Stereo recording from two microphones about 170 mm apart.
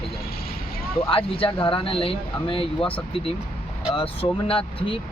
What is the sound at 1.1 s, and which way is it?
Speech, 35° left (ahead or behind).